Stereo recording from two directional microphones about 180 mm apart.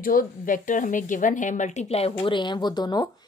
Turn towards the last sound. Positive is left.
turn(degrees=25)  # may be behind; listen again after turning